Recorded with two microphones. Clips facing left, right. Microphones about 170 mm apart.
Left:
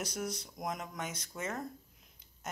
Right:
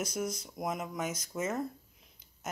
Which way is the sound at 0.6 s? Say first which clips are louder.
Right 5 dB; 5° right (ahead or behind).